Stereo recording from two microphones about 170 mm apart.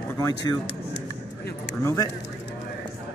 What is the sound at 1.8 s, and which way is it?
Speech, 15° left (ahead or behind).